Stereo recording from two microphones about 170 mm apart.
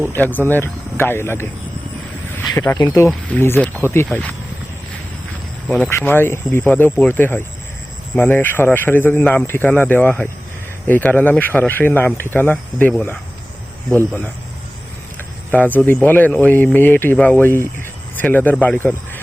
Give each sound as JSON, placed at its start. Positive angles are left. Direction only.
{"t": 0.1, "sound": "speech", "side_deg": 10}
{"t": 2.5, "sound": "speech", "side_deg": 20}
{"t": 5.6, "sound": "speech", "side_deg": 10}
{"t": 15.5, "sound": "speech", "side_deg": 10}